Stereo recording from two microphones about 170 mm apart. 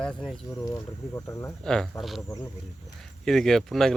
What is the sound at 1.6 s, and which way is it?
Speech, 5° left (ahead or behind).